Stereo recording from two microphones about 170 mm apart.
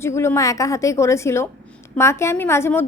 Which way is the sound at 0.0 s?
15° left (ahead or behind).